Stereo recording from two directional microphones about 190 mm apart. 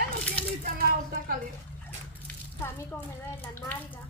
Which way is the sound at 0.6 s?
50° right (ahead or behind).